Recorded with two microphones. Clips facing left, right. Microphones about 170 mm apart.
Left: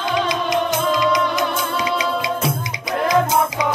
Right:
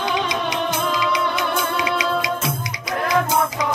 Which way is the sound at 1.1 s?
45° left (ahead or behind).